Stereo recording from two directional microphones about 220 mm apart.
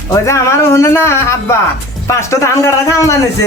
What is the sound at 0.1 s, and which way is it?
Speech, 15° left (ahead or behind).